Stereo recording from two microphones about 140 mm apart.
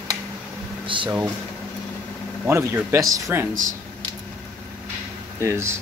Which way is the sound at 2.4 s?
20° right (ahead or behind).